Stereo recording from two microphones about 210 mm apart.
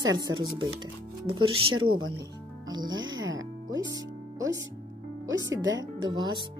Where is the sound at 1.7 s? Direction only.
75° right (ahead or behind).